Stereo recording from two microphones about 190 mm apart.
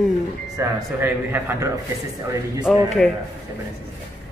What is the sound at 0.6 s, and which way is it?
A man's voice, 10° right (ahead or behind).